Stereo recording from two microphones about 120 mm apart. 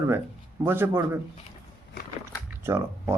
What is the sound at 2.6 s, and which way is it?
Speech, 20° right (ahead or behind).